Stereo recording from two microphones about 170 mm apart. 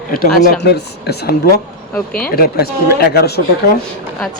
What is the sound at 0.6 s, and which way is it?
Speech, 75° left (ahead or behind).